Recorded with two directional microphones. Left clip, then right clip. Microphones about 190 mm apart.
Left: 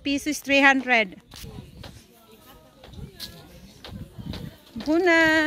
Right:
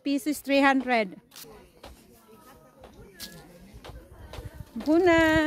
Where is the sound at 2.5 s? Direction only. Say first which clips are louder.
Left 2 dB; centre (ahead or behind).